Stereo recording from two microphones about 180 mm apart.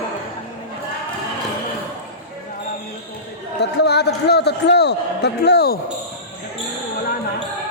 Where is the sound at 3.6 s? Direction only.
65° left (ahead or behind).